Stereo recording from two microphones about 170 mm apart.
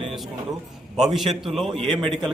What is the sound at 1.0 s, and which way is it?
Speech, centre (ahead or behind).